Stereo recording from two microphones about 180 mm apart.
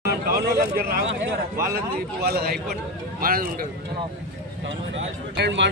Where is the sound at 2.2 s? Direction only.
60° right (ahead or behind).